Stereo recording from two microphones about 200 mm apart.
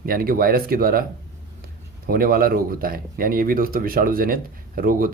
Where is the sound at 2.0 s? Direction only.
45° right (ahead or behind).